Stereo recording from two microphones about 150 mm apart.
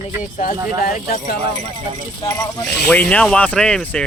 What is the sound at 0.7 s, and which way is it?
Speech, 70° left (ahead or behind).